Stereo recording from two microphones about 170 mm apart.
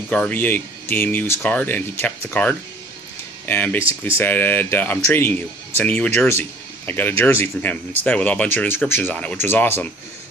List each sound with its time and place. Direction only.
0.1 s speech: 10° left (ahead or behind)